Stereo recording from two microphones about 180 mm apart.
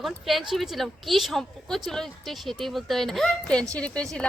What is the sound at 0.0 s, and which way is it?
A woman's voice, centre (ahead or behind).